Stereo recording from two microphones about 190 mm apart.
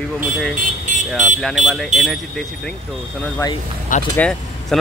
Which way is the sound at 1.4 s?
Centre (ahead or behind).